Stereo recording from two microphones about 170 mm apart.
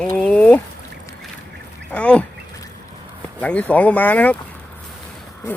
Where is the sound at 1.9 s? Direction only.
10° left (ahead or behind).